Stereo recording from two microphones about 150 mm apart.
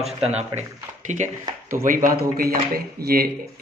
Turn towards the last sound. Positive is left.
turn(degrees=-90)